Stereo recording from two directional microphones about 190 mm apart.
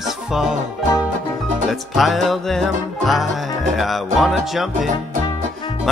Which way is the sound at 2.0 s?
Centre (ahead or behind).